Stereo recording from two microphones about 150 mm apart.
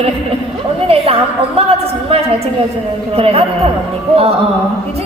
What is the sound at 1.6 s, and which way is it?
Speech, 40° right (ahead or behind).